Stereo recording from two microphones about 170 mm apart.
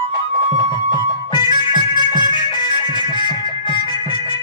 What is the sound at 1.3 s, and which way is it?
Music, 25° left (ahead or behind).